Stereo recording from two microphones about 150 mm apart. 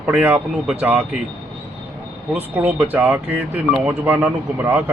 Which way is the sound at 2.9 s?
15° right (ahead or behind).